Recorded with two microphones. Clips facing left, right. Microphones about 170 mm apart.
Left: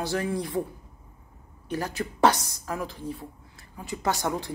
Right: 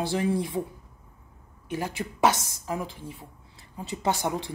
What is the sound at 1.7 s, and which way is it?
A man's voice, 15° right (ahead or behind).